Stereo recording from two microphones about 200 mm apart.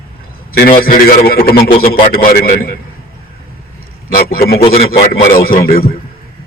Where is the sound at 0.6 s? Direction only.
45° left (ahead or behind).